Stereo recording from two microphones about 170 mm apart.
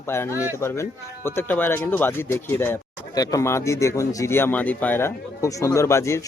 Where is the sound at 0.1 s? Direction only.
15° left (ahead or behind).